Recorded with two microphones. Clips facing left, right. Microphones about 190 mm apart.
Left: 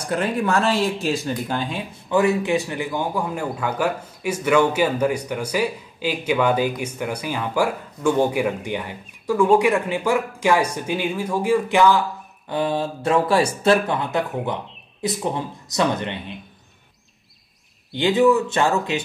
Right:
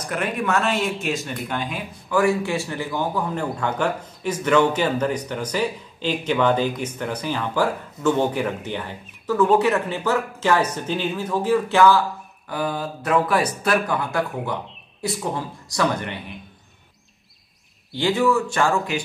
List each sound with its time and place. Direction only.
0.0 s speech: 30° left (ahead or behind)
17.9 s speech: 20° left (ahead or behind)